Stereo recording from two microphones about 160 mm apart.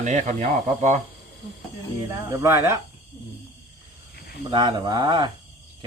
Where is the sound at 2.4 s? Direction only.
15° right (ahead or behind).